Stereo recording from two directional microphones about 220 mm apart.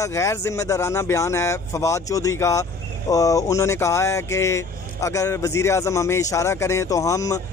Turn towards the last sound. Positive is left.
turn(degrees=15)  # may be behind; listen again after turning